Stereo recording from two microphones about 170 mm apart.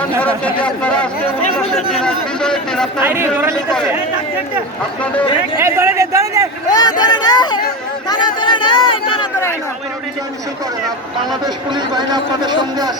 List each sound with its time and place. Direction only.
0.2 s speech: 10° left (ahead or behind)
3.0 s a man's voice: 10° right (ahead or behind)
5.5 s a man's voice: 15° right (ahead or behind)
6.7 s speech: 25° left (ahead or behind)
11.4 s speech: 25° right (ahead or behind)